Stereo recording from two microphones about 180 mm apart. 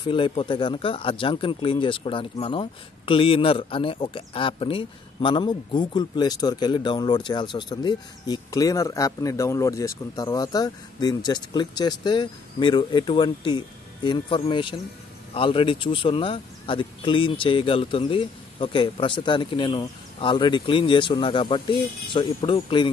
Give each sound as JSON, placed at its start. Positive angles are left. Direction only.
{"t": 0.0, "sound": "speech", "side_deg": 30}